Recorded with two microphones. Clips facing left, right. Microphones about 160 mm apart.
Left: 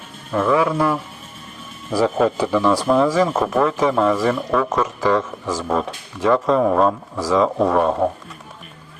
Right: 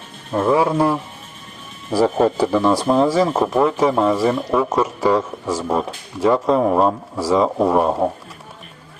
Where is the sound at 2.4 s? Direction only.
30° right (ahead or behind).